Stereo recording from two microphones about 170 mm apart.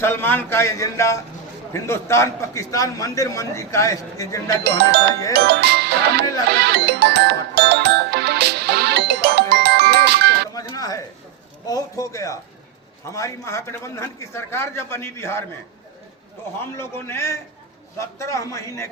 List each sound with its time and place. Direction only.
0.0 s a man's voice: 10° left (ahead or behind)
5.3 s music: 70° right (ahead or behind)
10.5 s music: 20° left (ahead or behind)
11.6 s a man's voice: 20° left (ahead or behind)
16.7 s a man's voice: 15° left (ahead or behind)